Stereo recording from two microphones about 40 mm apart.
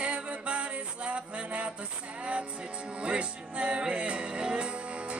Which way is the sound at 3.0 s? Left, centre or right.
Right.